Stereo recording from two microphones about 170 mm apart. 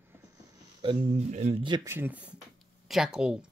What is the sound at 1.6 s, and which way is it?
Speech, 25° right (ahead or behind).